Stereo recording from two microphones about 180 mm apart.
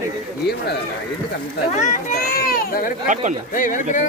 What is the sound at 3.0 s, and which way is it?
Speech, 45° right (ahead or behind).